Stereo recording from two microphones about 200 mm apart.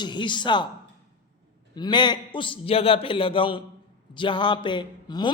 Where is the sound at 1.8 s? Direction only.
20° left (ahead or behind).